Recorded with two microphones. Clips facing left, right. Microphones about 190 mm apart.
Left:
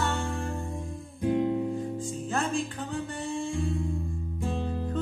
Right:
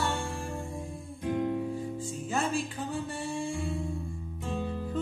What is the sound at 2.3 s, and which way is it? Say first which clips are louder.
Music: left 1 dB; 10° right (ahead or behind).